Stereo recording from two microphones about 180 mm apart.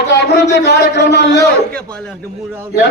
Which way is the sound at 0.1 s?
70° left (ahead or behind).